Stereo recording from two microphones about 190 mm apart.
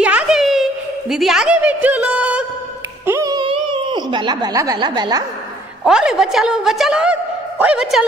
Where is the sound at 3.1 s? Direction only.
20° right (ahead or behind).